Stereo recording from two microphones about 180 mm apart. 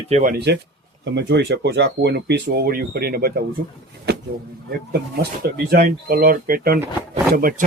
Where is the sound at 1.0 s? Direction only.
80° right; by 3.4 s 60° right (ahead or behind).